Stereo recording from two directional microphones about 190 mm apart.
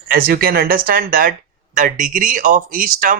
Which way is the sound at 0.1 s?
50° right (ahead or behind).